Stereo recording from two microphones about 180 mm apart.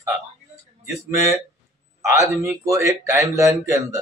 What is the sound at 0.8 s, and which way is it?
Speech, 20° right (ahead or behind).